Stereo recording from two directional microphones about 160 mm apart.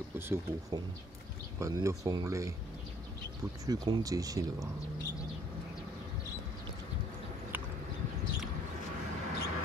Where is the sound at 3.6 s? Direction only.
25° right (ahead or behind).